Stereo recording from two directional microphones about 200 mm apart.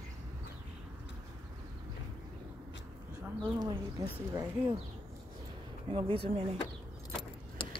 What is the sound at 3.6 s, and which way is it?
Speech, 15° right (ahead or behind).